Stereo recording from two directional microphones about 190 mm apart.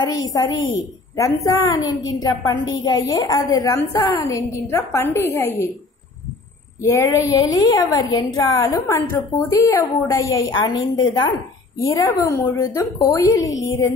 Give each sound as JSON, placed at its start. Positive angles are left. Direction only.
{"t": 0.0, "sound": "a woman's voice", "side_deg": 20}
{"t": 6.8, "sound": "a woman's voice", "side_deg": 15}
{"t": 13.5, "sound": "music", "side_deg": 85}